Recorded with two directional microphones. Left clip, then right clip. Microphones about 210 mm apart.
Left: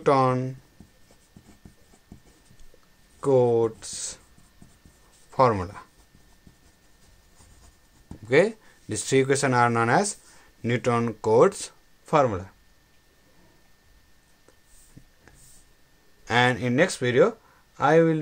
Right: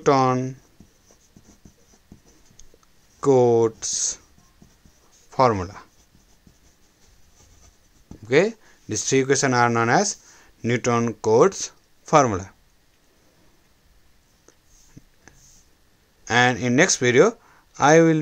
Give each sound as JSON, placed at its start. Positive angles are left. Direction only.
{"t": 0.0, "sound": "speech", "side_deg": -20}
{"t": 3.2, "sound": "speech", "side_deg": -30}
{"t": 5.3, "sound": "speech", "side_deg": -20}
{"t": 8.3, "sound": "speech", "side_deg": -15}
{"t": 12.1, "sound": "speech", "side_deg": -30}
{"t": 15.3, "sound": "a sound", "side_deg": -20}
{"t": 16.3, "sound": "speech", "side_deg": -20}